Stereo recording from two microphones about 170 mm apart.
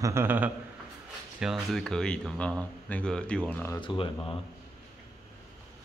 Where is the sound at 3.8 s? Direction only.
30° left (ahead or behind).